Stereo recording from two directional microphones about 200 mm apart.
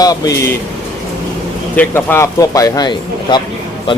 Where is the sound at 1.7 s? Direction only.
10° left (ahead or behind).